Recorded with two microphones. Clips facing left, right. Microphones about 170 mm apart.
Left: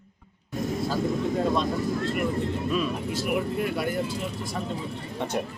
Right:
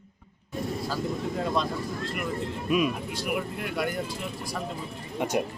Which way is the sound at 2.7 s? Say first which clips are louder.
Right 5 dB; 10° right (ahead or behind).